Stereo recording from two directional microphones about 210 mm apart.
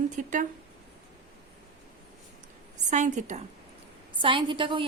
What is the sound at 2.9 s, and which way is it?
Speech, 35° right (ahead or behind).